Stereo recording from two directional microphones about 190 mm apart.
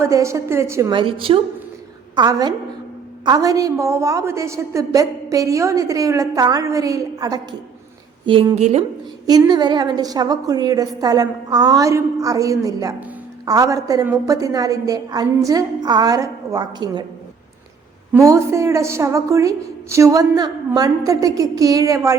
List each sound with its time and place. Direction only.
0.0 s a woman's voice: 15° right (ahead or behind)
0.9 s a woman's voice: 30° right (ahead or behind)
9.2 s a woman's voice: 20° right (ahead or behind)
18.1 s a woman's voice: 15° right (ahead or behind)